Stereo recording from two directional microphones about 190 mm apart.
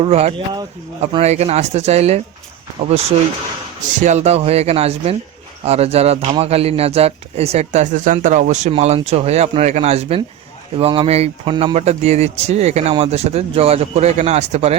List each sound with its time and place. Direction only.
0.0 s speech: 35° right (ahead or behind)
4.0 s speech: 35° right (ahead or behind)